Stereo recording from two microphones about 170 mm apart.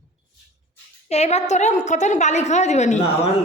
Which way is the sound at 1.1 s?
40° left (ahead or behind).